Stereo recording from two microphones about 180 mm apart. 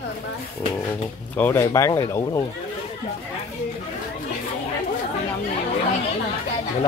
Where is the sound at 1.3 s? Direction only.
10° left (ahead or behind).